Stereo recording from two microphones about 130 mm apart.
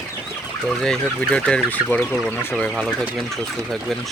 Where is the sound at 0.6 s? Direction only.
5° left (ahead or behind).